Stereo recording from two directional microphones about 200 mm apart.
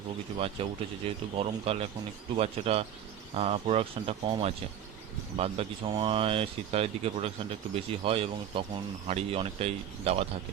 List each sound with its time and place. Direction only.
0.3 s speech: 30° right (ahead or behind)